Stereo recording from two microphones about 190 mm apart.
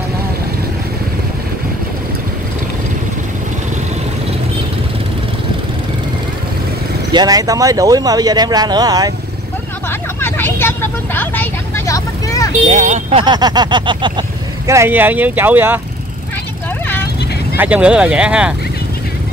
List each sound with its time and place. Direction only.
7.1 s speech: 20° right (ahead or behind)
9.8 s vehicle: 10° left (ahead or behind)
12.6 s speech: 35° right (ahead or behind)
13.2 s speech: 20° right (ahead or behind)
14.7 s speech: 10° right (ahead or behind)
17.6 s speech: 5° right (ahead or behind)